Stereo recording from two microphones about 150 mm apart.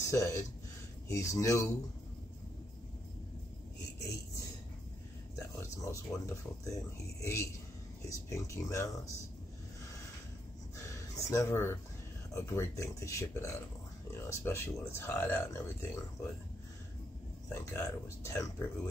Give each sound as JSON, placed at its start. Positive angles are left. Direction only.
{"t": 0.0, "sound": "speech", "side_deg": 20}
{"t": 5.3, "sound": "speech", "side_deg": 20}
{"t": 11.0, "sound": "speech", "side_deg": 20}
{"t": 17.5, "sound": "speech", "side_deg": 20}